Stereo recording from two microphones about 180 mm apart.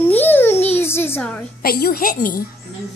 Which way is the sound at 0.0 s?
10° left (ahead or behind).